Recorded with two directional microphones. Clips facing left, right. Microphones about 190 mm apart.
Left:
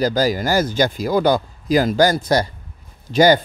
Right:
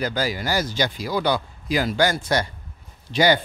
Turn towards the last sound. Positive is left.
turn(degrees=45)  # may be behind; listen again after turning